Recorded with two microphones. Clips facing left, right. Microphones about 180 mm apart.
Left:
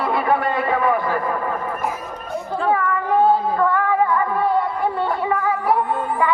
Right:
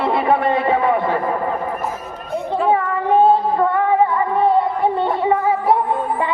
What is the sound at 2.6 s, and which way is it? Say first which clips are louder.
Female singing: right 2 dB; 25° right (ahead or behind).